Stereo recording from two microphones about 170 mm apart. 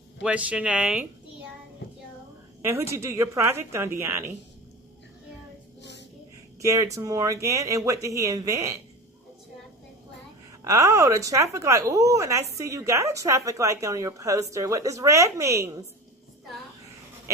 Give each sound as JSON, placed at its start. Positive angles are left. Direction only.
{"t": 0.2, "sound": "a woman's voice", "side_deg": -10}
{"t": 2.6, "sound": "a woman's voice", "side_deg": -15}
{"t": 5.8, "sound": "a sound", "side_deg": 90}
{"t": 6.6, "sound": "a woman's voice", "side_deg": -20}
{"t": 10.6, "sound": "a woman's voice", "side_deg": -20}